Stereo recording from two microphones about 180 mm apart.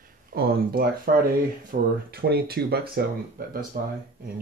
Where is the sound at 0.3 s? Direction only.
60° right (ahead or behind).